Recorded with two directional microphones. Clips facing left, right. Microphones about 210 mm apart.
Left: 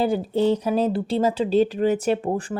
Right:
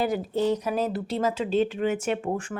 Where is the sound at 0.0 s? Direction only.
30° left (ahead or behind).